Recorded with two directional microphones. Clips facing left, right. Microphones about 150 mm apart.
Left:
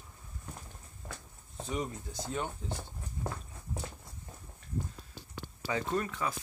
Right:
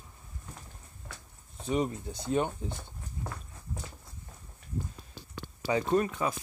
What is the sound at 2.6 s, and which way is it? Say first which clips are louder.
Speech: right 1 dB; 15° right (ahead or behind).